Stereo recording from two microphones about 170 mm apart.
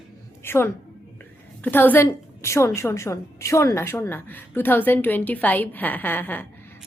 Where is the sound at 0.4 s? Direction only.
15° left (ahead or behind).